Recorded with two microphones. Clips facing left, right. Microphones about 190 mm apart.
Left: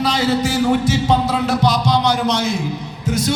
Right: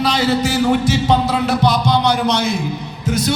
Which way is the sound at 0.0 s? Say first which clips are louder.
Right 1 dB; 70° right (ahead or behind).